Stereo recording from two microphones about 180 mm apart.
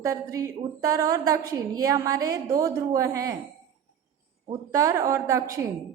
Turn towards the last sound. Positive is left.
turn(degrees=-20)  # may be behind; listen again after turning